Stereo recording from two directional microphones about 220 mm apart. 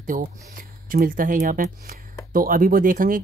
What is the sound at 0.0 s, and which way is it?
Speech, 35° right (ahead or behind).